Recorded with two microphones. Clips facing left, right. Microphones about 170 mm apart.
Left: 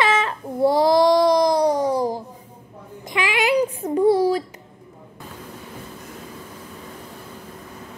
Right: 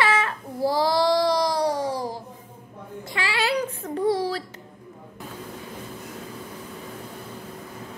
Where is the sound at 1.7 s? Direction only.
45° left (ahead or behind).